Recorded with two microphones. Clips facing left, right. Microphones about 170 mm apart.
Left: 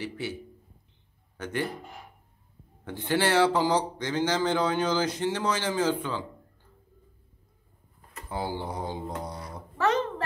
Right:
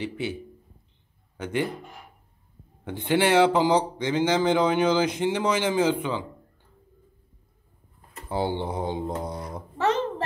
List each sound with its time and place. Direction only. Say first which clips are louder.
0.0 s speech: right 4 dB; 20° right (ahead or behind)
2.8 s speech: right 4 dB; 20° right (ahead or behind)
8.3 s speech: right 5 dB; 25° right (ahead or behind)